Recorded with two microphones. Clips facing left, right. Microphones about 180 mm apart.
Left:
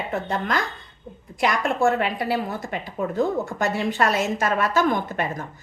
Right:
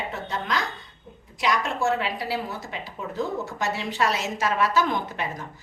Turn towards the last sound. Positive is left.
turn(degrees=50)  # may be behind; listen again after turning